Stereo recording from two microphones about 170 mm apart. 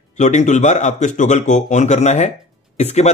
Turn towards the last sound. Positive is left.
turn(degrees=40)  # may be behind; listen again after turning